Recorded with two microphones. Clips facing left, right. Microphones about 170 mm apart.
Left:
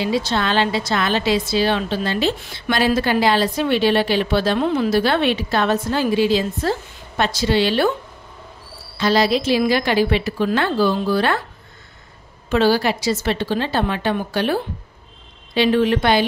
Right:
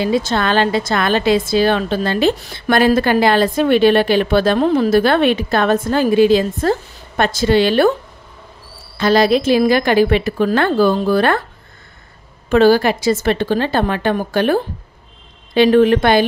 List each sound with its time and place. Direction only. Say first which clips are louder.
0.0 s a woman's voice: right 4 dB; 50° right (ahead or behind)
8.9 s a woman's voice: right 4 dB; 50° right (ahead or behind)
12.4 s a woman's voice: right 5 dB; 50° right (ahead or behind)